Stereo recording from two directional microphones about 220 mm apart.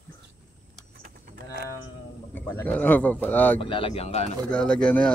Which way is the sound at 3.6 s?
25° left (ahead or behind).